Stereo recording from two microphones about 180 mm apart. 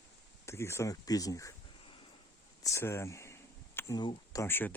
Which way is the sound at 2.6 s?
15° left (ahead or behind).